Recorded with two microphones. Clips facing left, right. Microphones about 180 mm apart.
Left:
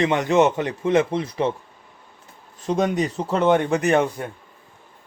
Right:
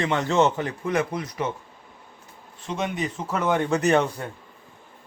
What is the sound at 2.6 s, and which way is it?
Speech, 40° left (ahead or behind).